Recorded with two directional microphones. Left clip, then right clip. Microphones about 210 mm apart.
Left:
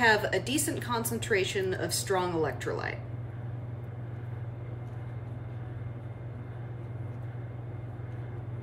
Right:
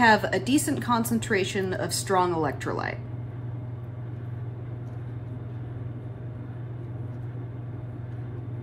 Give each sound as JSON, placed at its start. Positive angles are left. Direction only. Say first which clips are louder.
{"t": 0.0, "sound": "a woman's voice", "louder": "right 4 dB", "side_deg": -10}